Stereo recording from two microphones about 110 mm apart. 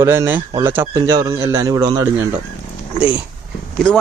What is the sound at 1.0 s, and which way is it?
A man's voice, 30° right (ahead or behind).